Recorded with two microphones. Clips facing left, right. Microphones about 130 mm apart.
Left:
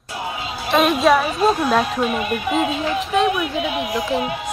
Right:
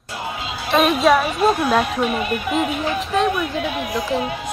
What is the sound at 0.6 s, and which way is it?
A woman's voice, centre (ahead or behind).